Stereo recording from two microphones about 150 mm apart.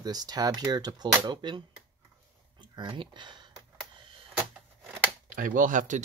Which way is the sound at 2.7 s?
30° right (ahead or behind).